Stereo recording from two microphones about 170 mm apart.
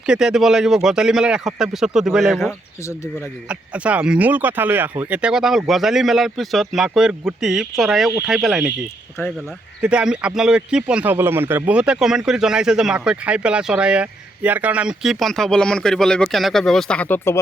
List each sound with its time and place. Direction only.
0.0 s speech: 5° right (ahead or behind)
2.5 s speech: 15° left (ahead or behind)
3.5 s speech: 5° right (ahead or behind)
9.2 s speech: 15° left (ahead or behind)
9.8 s speech: 5° right (ahead or behind); by 17.4 s 15° left (ahead or behind)